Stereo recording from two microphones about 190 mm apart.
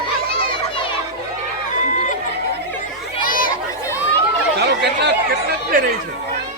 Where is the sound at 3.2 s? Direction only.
45° left (ahead or behind).